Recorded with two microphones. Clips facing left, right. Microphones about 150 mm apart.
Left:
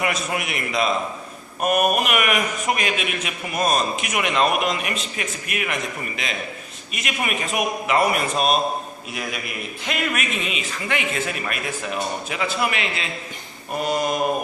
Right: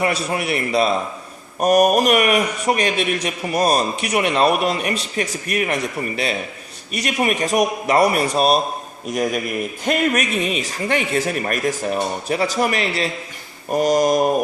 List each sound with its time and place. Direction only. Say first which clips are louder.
0.0 s a man's voice: right 4 dB; 35° right (ahead or behind)